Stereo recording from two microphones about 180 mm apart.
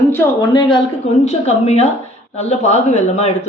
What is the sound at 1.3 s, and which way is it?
Speech, 35° left (ahead or behind).